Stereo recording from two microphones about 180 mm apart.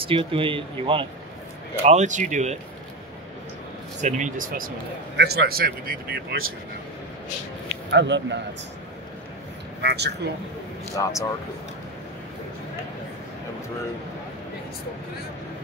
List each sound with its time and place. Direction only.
0.0 s speech: 30° right (ahead or behind)
4.0 s speech: 45° right (ahead or behind)
5.1 s a man's voice: 65° right (ahead or behind)
7.9 s a man's voice: 80° right
9.8 s a man's voice: 70° right (ahead or behind)
11.0 s speech: 15° left (ahead or behind)